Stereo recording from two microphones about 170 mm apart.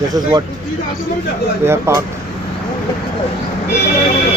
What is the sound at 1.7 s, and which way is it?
Speech, 15° right (ahead or behind).